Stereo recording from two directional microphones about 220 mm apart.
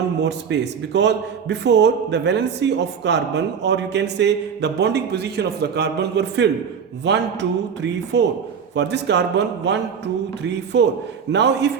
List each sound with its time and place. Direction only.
0.2 s a man's voice: 50° right (ahead or behind)